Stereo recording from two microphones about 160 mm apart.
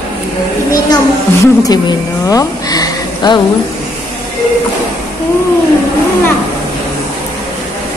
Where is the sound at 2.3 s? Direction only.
20° left (ahead or behind).